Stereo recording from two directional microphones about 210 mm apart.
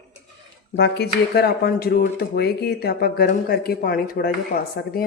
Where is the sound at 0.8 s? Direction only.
50° left (ahead or behind).